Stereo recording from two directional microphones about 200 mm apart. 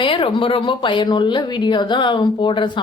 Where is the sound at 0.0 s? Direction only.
25° left (ahead or behind).